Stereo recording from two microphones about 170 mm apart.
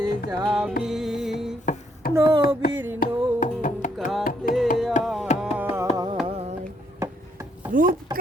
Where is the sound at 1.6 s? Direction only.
55° left (ahead or behind).